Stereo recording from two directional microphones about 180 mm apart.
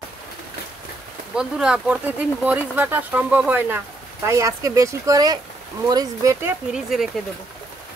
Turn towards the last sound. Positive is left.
turn(degrees=0)  # may be behind; listen again after turning